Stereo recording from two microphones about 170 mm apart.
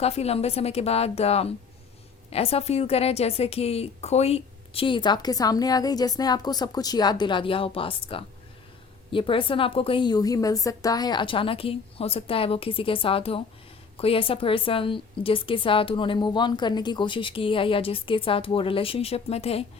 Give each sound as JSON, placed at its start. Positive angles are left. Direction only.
{"t": 0.0, "sound": "a woman's voice", "side_deg": 35}